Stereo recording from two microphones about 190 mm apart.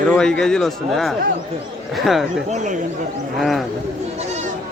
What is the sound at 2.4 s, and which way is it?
Speech, 40° right (ahead or behind).